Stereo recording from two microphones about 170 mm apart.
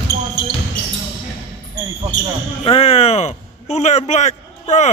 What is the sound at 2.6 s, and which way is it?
A man's voice, 35° left (ahead or behind).